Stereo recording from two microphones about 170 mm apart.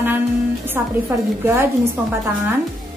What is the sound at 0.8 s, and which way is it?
Speech, 10° right (ahead or behind).